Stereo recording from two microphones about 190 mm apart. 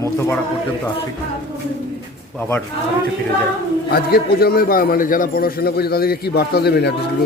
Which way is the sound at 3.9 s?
55° left (ahead or behind).